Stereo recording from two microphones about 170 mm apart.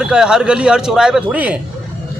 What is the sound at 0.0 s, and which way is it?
A man's voice, 5° right (ahead or behind).